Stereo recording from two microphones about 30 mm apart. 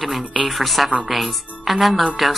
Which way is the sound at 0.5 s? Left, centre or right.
Centre.